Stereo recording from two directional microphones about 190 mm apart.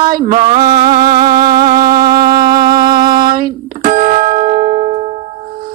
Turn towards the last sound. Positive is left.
turn(degrees=-35)  # may be behind; listen again after turning